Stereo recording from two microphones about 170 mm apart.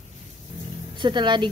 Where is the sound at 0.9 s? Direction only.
25° right (ahead or behind).